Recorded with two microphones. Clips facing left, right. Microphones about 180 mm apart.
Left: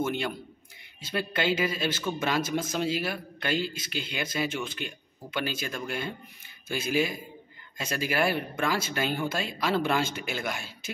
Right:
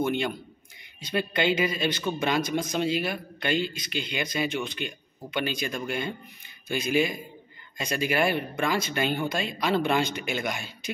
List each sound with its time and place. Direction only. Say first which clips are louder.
0.0 s speech: right 3 dB; 5° left (ahead or behind)